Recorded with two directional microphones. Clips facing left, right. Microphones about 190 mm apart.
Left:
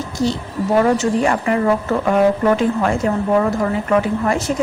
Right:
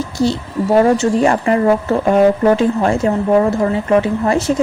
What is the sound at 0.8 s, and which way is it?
A woman's voice, 30° right (ahead or behind).